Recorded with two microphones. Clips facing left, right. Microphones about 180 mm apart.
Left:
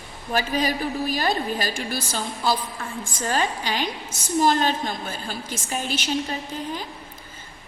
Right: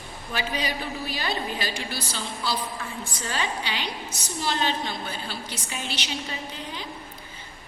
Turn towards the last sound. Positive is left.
turn(degrees=45)  # may be behind; listen again after turning